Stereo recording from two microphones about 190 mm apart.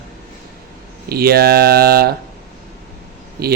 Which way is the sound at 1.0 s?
55° right (ahead or behind).